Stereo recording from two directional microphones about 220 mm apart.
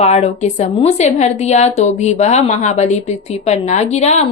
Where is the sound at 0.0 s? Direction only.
30° left (ahead or behind).